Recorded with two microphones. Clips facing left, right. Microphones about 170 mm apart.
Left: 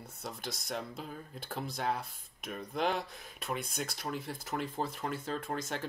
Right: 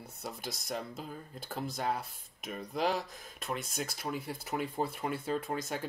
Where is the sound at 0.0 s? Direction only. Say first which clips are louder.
Right 1 dB; 5° right (ahead or behind).